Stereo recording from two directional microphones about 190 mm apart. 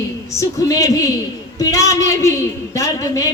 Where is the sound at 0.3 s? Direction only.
15° left (ahead or behind).